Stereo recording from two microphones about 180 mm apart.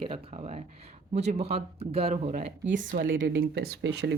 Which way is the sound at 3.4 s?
60° right (ahead or behind).